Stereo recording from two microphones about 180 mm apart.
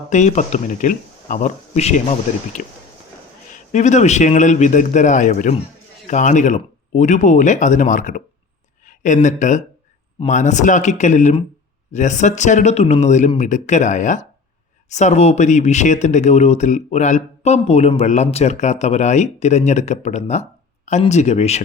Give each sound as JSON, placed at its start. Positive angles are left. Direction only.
{"t": 0.1, "sound": "speech", "side_deg": 40}